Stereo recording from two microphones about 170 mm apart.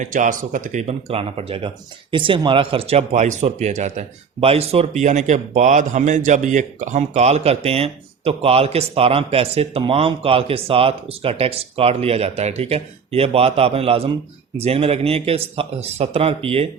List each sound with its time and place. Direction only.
0.0 s speech: 50° right (ahead or behind)